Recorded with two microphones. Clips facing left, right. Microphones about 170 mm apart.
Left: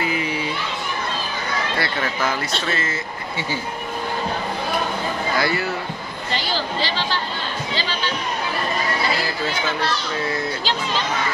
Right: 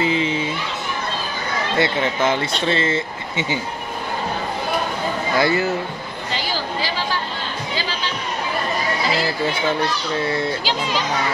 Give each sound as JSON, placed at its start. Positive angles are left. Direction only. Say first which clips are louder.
{"t": 0.0, "sound": "children playing", "louder": "right 4 dB", "side_deg": -25}
{"t": 1.8, "sound": "speech", "louder": "right 8 dB", "side_deg": -25}
{"t": 5.4, "sound": "speech", "louder": "right 6 dB", "side_deg": -25}